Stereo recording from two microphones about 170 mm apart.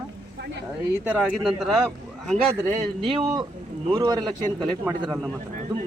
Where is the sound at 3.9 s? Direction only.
25° right (ahead or behind).